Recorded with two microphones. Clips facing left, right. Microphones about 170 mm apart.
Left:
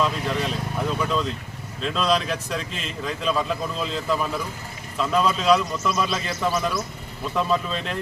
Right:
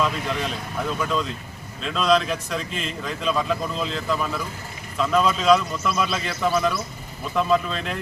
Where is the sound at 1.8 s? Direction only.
Centre (ahead or behind).